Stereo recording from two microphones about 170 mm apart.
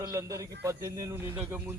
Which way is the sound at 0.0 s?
15° right (ahead or behind).